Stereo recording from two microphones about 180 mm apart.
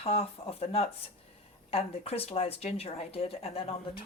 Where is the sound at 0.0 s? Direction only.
35° left (ahead or behind).